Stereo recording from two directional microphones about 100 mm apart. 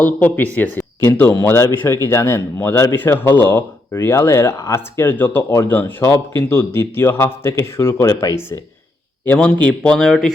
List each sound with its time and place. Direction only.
0.0 s a man's voice: 20° left (ahead or behind); by 8.4 s 35° left (ahead or behind)
9.2 s speech: 15° left (ahead or behind)